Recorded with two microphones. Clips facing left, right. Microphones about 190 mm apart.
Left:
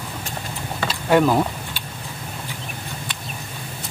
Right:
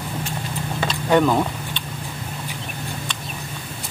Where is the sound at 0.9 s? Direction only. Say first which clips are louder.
Left 1 dB; 5° left (ahead or behind).